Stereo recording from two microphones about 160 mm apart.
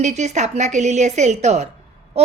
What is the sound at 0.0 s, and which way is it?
Speech, 45° right (ahead or behind).